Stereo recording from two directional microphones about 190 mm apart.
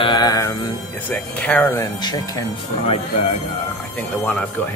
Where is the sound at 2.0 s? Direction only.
20° left (ahead or behind).